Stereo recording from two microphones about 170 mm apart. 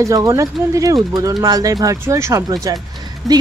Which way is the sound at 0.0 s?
20° right (ahead or behind).